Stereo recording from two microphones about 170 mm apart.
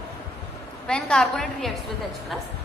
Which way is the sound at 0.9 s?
5° left (ahead or behind).